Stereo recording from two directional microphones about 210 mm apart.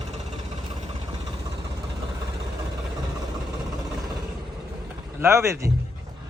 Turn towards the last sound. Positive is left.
turn(degrees=-15)  # may be behind; listen again after turning